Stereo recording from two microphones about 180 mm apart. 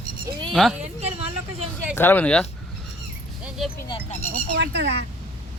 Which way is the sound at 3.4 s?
Centre (ahead or behind).